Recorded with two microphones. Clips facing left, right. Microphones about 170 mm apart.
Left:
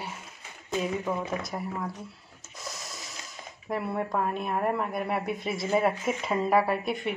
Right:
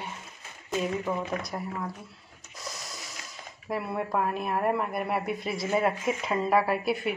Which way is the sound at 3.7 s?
Centre (ahead or behind).